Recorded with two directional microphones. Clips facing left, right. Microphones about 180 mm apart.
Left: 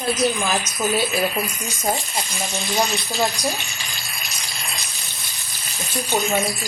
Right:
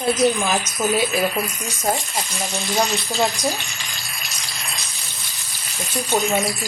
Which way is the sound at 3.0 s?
15° right (ahead or behind).